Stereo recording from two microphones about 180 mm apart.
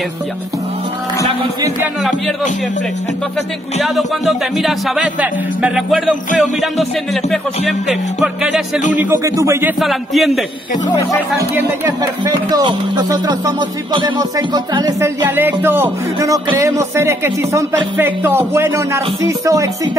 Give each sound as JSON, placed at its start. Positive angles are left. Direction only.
{"t": 3.8, "sound": "speech", "side_deg": 0}
{"t": 8.9, "sound": "music", "side_deg": -15}
{"t": 9.8, "sound": "speech", "side_deg": 0}
{"t": 12.4, "sound": "music", "side_deg": -20}